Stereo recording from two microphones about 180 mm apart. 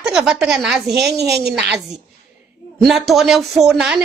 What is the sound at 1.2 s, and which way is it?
Speech, 65° right (ahead or behind).